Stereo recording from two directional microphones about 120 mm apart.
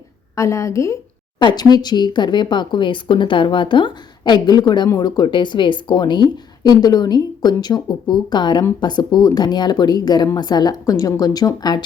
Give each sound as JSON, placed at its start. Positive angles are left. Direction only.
{"t": 0.3, "sound": "a woman's voice", "side_deg": 25}
{"t": 1.4, "sound": "speech", "side_deg": 35}